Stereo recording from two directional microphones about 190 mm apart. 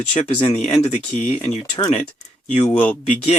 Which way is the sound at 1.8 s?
20° left (ahead or behind).